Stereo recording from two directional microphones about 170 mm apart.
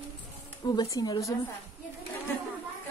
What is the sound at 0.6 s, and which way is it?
Speech, 20° left (ahead or behind).